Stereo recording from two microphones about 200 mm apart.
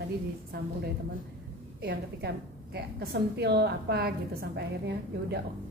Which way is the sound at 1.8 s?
55° right (ahead or behind).